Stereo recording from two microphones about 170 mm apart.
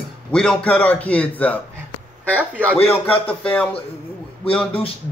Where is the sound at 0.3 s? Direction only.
5° left (ahead or behind).